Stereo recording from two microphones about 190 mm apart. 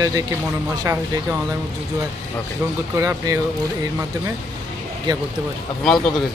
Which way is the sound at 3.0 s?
15° right (ahead or behind).